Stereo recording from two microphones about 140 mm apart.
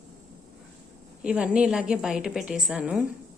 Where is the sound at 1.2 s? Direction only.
5° right (ahead or behind).